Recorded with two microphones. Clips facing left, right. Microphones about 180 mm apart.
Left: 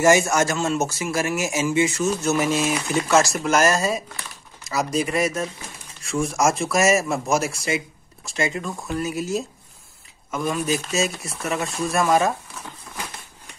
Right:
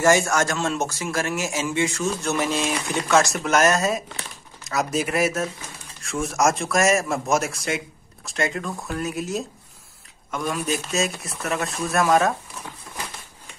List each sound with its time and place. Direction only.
0.0 s speech: 10° left (ahead or behind)